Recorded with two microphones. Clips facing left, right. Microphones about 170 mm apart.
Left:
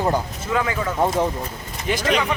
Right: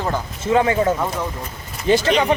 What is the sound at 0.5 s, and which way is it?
Speech, 30° right (ahead or behind).